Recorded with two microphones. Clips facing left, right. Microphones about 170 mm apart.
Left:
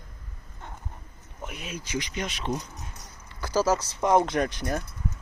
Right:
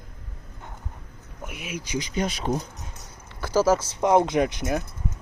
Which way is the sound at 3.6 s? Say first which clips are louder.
Right 4 dB; 10° right (ahead or behind).